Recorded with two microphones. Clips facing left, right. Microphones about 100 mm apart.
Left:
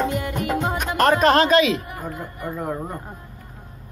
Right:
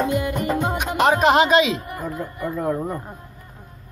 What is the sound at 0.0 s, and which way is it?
Music, 15° right (ahead or behind).